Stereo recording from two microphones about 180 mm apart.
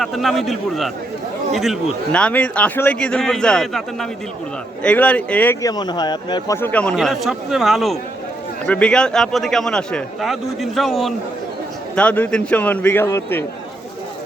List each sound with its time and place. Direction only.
0.0 s a man's voice: centre (ahead or behind)
5.7 s speech: 25° left (ahead or behind)
6.6 s a man's voice: 10° left (ahead or behind)